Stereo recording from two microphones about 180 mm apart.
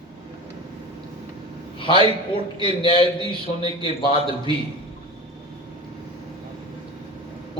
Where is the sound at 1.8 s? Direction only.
30° left (ahead or behind).